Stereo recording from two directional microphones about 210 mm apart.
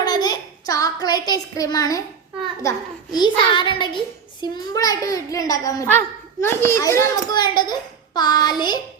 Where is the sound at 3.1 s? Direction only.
20° left (ahead or behind).